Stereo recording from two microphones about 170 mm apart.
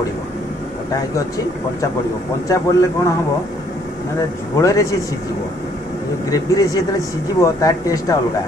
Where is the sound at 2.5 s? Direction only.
20° left (ahead or behind).